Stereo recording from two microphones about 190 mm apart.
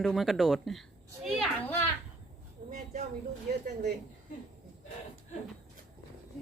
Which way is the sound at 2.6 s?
40° right (ahead or behind).